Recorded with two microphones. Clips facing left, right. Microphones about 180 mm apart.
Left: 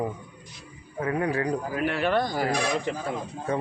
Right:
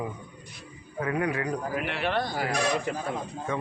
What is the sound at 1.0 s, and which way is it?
A man's voice, 30° left (ahead or behind).